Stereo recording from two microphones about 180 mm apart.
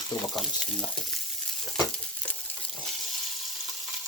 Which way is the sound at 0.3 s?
Centre (ahead or behind).